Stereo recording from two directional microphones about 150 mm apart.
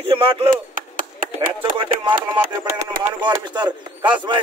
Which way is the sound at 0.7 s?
65° right (ahead or behind).